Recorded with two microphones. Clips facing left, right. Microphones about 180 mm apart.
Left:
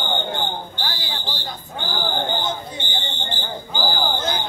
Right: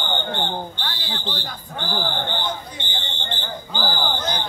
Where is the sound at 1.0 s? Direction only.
10° left (ahead or behind).